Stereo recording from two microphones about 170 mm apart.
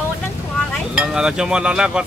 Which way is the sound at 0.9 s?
5° right (ahead or behind).